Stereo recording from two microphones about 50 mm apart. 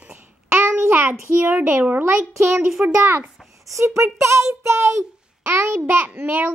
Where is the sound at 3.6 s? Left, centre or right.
Right.